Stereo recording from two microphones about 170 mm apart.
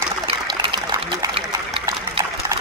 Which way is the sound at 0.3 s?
30° right (ahead or behind).